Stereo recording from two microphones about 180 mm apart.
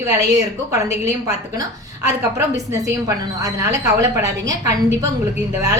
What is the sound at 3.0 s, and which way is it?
A woman's voice, 15° right (ahead or behind).